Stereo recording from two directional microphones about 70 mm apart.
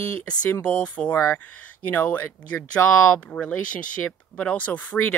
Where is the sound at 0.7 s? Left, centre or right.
Centre.